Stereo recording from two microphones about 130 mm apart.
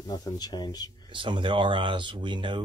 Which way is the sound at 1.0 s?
40° right (ahead or behind).